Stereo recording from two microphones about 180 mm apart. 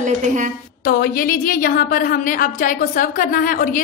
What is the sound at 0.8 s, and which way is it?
A woman's voice, 55° left (ahead or behind).